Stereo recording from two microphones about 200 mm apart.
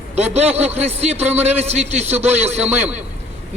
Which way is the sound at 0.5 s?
30° right (ahead or behind).